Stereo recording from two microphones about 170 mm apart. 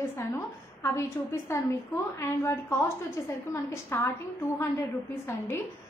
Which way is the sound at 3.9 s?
15° left (ahead or behind).